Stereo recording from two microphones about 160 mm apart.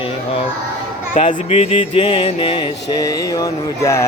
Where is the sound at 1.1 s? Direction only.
45° left (ahead or behind).